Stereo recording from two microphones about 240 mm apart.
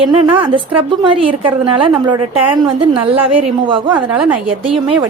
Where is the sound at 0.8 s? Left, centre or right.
Right.